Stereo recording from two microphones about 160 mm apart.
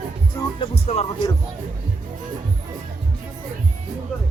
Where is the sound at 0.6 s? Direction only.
40° left (ahead or behind).